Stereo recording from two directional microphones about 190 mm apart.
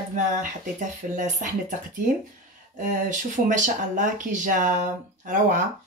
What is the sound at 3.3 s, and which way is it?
Speech, 40° right (ahead or behind).